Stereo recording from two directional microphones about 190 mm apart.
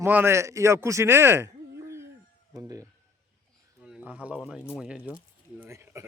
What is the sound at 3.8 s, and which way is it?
A man's voice, 5° right (ahead or behind).